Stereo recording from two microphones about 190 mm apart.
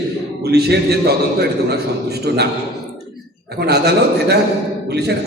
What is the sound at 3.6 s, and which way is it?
A man's voice, 60° right (ahead or behind).